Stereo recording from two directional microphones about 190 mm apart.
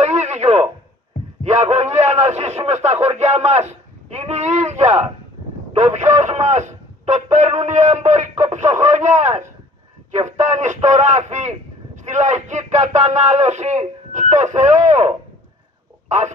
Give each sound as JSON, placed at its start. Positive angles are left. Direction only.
{"t": 0.0, "sound": "radio", "side_deg": -35}
{"t": 1.4, "sound": "a man's voice", "side_deg": -35}